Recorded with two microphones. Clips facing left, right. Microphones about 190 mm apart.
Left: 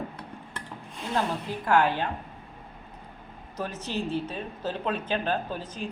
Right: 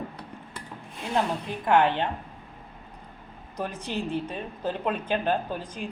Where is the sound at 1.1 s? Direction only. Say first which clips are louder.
Right 1 dB; 20° right (ahead or behind).